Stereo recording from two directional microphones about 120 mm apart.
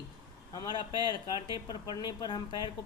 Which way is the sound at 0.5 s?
35° left (ahead or behind).